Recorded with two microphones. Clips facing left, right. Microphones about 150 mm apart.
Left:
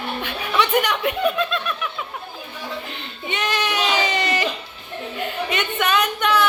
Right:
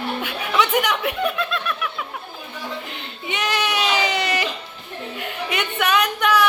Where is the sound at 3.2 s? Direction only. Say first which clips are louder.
Even; 10° right (ahead or behind).